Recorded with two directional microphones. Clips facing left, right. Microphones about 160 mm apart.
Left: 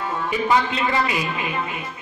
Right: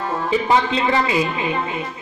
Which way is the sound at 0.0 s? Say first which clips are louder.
Right 3 dB; 35° right (ahead or behind).